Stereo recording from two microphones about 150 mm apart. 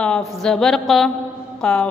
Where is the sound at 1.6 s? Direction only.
5° left (ahead or behind).